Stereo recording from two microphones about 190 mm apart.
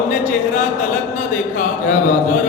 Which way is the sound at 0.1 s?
40° left (ahead or behind).